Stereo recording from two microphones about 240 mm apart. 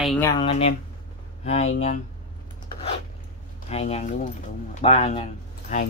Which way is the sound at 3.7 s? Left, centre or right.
Left.